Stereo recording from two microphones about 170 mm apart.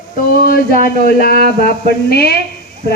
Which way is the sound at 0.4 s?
60° left (ahead or behind).